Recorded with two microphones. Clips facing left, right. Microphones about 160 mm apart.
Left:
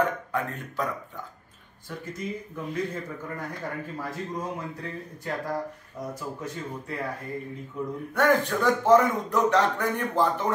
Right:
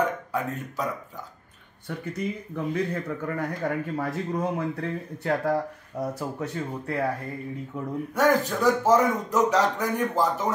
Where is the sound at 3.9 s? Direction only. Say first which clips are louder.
Right 5 dB; 65° right (ahead or behind).